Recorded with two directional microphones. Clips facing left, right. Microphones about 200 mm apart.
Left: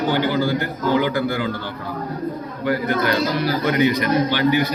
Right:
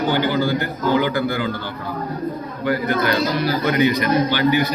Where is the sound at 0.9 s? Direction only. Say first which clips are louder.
Even; 30° left (ahead or behind).